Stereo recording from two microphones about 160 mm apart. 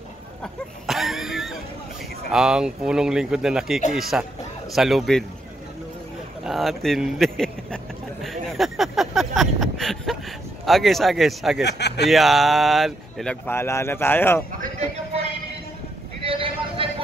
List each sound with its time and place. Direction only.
0.4 s a sound: centre (ahead or behind)
2.3 s speech: 5° right (ahead or behind)
6.4 s a man's voice: centre (ahead or behind)
11.6 s speech: 90° left
12.1 s speech: centre (ahead or behind)
14.6 s a sound: 45° right (ahead or behind)
16.3 s vehicle: 35° right (ahead or behind)